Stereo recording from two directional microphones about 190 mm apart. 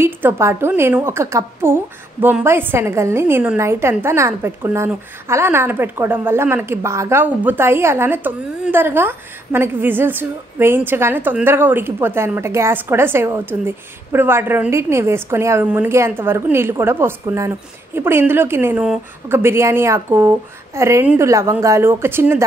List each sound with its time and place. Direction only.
0.0 s a woman's voice: 10° right (ahead or behind)